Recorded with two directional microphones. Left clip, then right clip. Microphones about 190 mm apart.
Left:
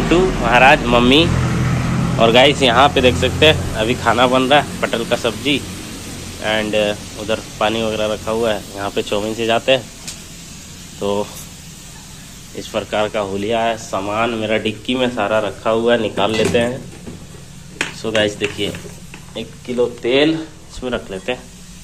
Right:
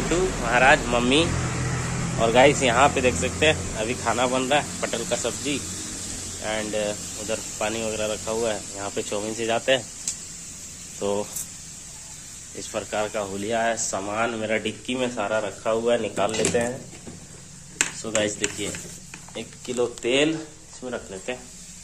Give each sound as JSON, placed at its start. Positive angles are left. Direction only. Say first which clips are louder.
{"t": 0.1, "sound": "speech", "louder": "left 9 dB", "side_deg": 0}
{"t": 11.0, "sound": "speech", "louder": "left 6 dB", "side_deg": -20}
{"t": 12.7, "sound": "speech", "louder": "left 8 dB", "side_deg": -10}
{"t": 18.0, "sound": "speech", "louder": "left 10 dB", "side_deg": -5}
{"t": 19.8, "sound": "speech", "louder": "left 7 dB", "side_deg": -20}
{"t": 20.8, "sound": "speech", "louder": "left 9 dB", "side_deg": -5}